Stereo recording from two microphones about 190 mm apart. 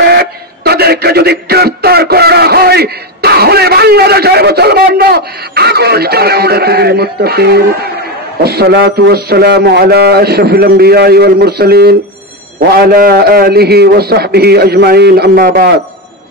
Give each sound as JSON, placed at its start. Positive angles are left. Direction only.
{"t": 0.0, "sound": "music", "side_deg": -55}